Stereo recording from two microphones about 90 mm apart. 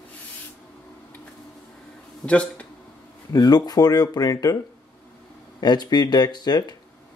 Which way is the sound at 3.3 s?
45° left (ahead or behind).